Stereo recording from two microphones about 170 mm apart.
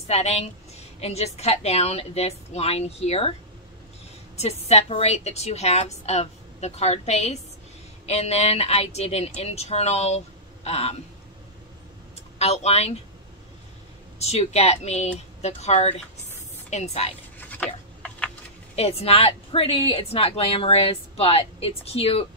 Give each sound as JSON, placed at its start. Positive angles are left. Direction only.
{"t": 0.1, "sound": "a woman's voice", "side_deg": 40}
{"t": 4.4, "sound": "a woman's voice", "side_deg": 40}
{"t": 12.4, "sound": "a woman's voice", "side_deg": 40}
{"t": 14.1, "sound": "a woman's voice", "side_deg": 40}
{"t": 17.4, "sound": "a sound", "side_deg": 10}
{"t": 18.8, "sound": "a woman's voice", "side_deg": 35}